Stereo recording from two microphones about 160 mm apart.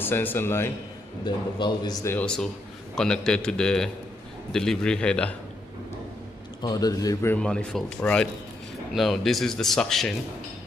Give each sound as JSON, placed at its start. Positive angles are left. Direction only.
{"t": 0.0, "sound": "speech", "side_deg": 15}
{"t": 1.2, "sound": "a man's voice", "side_deg": 25}
{"t": 2.1, "sound": "speech", "side_deg": 5}
{"t": 6.6, "sound": "speech", "side_deg": 25}